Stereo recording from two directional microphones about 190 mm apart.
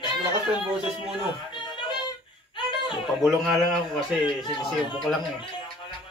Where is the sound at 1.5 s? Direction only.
25° left (ahead or behind).